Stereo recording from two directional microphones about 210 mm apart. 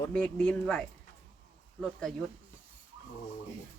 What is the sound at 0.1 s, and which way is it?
Speech, 5° left (ahead or behind).